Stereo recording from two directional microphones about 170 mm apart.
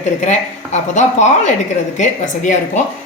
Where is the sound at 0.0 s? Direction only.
45° left (ahead or behind).